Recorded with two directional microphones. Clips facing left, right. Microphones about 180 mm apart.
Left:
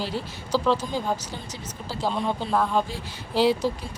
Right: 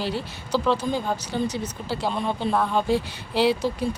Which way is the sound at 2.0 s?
Centre (ahead or behind).